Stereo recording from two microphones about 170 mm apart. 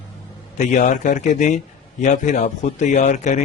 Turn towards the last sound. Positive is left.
turn(degrees=45)  # may be behind; listen again after turning